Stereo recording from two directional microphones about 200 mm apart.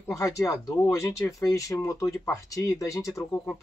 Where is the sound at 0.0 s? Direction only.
15° left (ahead or behind).